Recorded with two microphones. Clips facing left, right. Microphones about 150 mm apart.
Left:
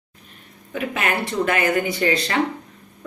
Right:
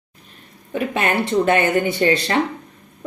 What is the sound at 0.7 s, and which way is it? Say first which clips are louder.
A woman's voice: right 3 dB; 30° right (ahead or behind).